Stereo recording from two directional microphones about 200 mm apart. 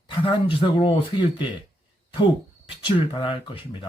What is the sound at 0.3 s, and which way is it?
Speech, 25° left (ahead or behind).